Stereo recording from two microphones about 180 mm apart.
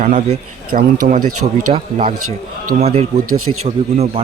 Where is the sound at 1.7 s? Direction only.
40° right (ahead or behind).